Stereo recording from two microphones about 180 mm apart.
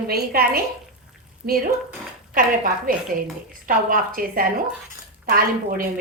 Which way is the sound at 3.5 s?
50° right (ahead or behind).